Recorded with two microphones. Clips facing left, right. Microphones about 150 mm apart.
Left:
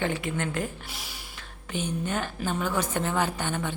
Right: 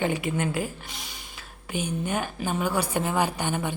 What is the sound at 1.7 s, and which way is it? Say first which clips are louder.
A woman's voice: right 1 dB; 10° right (ahead or behind).